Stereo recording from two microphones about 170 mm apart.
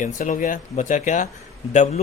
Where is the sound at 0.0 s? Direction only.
50° left (ahead or behind).